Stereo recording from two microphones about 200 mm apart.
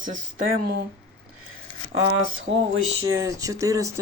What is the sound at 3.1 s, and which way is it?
Speech, 15° right (ahead or behind).